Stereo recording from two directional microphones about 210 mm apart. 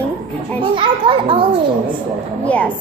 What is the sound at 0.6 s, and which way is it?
A child's voice, 25° right (ahead or behind).